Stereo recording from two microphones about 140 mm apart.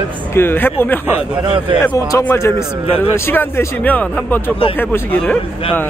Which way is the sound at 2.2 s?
15° left (ahead or behind).